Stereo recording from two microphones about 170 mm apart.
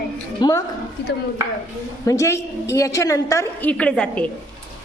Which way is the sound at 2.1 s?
15° left (ahead or behind).